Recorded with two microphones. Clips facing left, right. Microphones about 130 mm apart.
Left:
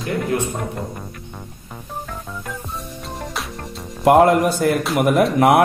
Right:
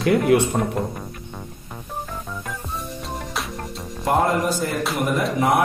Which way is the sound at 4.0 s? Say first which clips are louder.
Left 7 dB; 75° left (ahead or behind).